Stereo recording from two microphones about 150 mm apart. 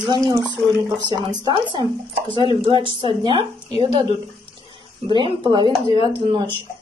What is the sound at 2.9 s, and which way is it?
Speech, 35° right (ahead or behind).